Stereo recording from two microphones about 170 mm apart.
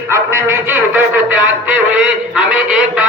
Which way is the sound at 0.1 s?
15° right (ahead or behind).